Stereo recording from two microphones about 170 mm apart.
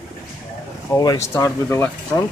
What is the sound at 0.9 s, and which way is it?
Speech, 20° left (ahead or behind).